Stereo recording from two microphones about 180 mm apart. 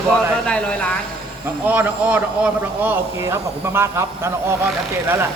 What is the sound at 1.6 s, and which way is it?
Speech, 10° right (ahead or behind).